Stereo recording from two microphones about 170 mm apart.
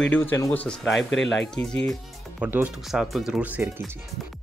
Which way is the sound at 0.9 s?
90° left.